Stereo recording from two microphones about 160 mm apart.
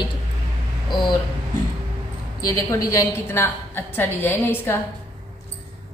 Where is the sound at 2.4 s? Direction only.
20° left (ahead or behind).